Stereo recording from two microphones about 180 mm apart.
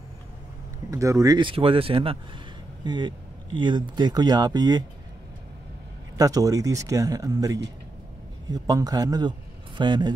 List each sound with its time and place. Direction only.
0.8 s speech: 20° right (ahead or behind)
6.1 s speech: 20° right (ahead or behind)